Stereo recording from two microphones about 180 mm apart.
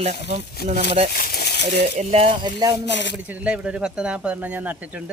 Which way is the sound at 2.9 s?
80° left.